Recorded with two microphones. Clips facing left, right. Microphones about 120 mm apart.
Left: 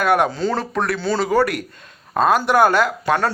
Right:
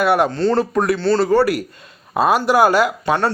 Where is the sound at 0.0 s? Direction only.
Centre (ahead or behind).